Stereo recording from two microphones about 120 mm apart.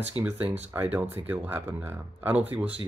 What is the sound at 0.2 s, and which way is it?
Speech, 15° right (ahead or behind).